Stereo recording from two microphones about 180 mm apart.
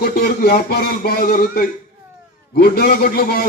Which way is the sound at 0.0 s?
55° left (ahead or behind).